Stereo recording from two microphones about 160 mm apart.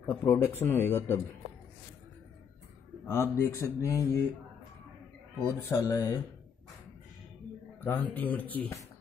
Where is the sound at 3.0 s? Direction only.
15° left (ahead or behind).